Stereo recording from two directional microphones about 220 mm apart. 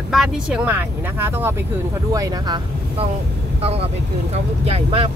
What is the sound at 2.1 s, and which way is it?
Speech, 20° right (ahead or behind).